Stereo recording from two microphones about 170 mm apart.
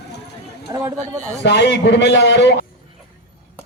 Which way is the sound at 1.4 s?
90° left.